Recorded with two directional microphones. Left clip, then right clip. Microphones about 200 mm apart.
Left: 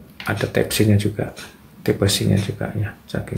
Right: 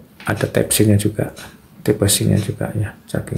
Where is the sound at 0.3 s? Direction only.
20° right (ahead or behind).